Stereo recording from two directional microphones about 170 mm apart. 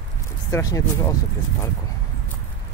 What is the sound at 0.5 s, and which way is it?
Speech, 20° left (ahead or behind).